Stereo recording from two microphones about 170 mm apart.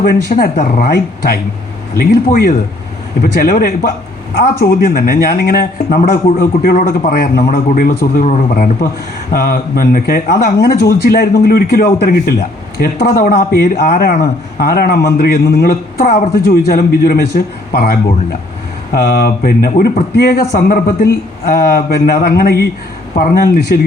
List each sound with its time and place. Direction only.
0.0 s speech: 60° left (ahead or behind)